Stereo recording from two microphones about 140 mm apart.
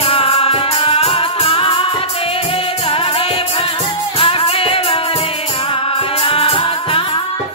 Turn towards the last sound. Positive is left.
turn(degrees=40)  # may be behind; listen again after turning